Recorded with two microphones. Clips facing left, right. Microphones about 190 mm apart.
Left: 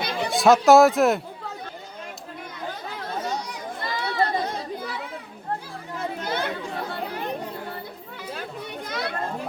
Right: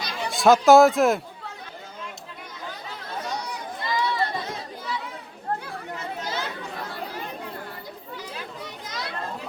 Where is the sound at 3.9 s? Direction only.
55° left (ahead or behind).